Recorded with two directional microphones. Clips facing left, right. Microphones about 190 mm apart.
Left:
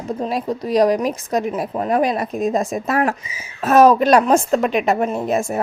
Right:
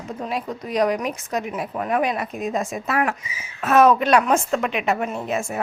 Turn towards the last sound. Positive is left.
turn(degrees=40)  # may be behind; listen again after turning